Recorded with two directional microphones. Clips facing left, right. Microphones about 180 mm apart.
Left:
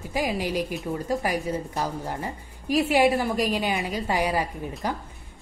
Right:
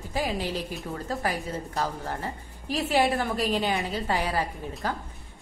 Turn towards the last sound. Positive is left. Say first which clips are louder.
# left 2 dB
turn(degrees=15)  # may be behind; listen again after turning